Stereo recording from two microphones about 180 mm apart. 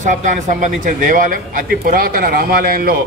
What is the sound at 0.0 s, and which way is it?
A man's voice, 45° right (ahead or behind).